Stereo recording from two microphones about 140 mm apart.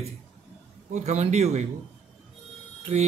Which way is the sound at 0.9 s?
55° right (ahead or behind).